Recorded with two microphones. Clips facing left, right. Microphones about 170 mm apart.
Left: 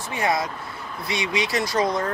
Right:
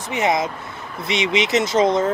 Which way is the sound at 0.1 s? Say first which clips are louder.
Right 4 dB; 20° right (ahead or behind).